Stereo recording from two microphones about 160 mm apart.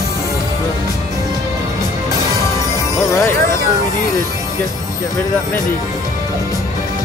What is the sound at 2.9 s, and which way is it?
Music, 20° left (ahead or behind).